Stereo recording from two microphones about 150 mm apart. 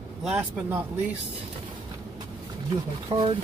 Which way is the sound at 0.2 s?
5° right (ahead or behind).